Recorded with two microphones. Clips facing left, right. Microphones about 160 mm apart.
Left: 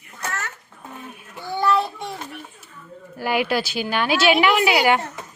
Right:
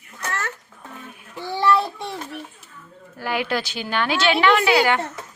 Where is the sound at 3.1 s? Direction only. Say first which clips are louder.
Left 3 dB; 15° left (ahead or behind).